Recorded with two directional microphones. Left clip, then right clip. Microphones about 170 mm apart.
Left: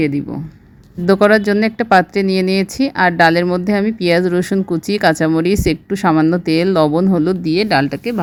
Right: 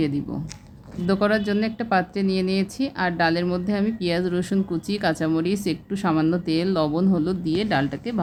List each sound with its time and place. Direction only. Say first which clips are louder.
1.0 s speech: left 11 dB; 45° left (ahead or behind)